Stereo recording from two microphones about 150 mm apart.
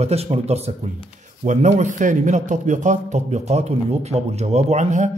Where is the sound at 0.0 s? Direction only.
45° right (ahead or behind).